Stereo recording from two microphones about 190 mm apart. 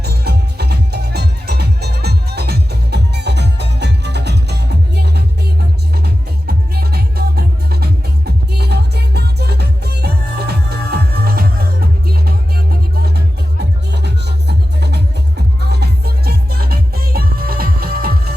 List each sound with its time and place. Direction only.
0.0 s music: 60° right (ahead or behind)
5.9 s music: 55° right (ahead or behind)
13.9 s music: 60° right (ahead or behind)